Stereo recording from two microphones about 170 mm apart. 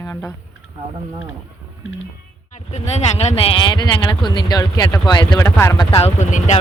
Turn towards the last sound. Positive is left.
turn(degrees=45)  # may be behind; listen again after turning